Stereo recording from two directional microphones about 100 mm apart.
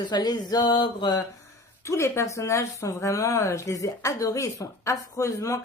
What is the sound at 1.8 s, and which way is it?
Speech, 30° left (ahead or behind).